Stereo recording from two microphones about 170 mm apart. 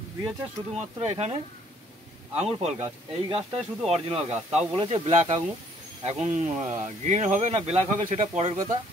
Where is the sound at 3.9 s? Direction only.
35° right (ahead or behind).